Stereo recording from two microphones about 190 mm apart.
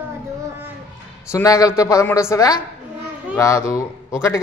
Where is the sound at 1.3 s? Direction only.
15° left (ahead or behind).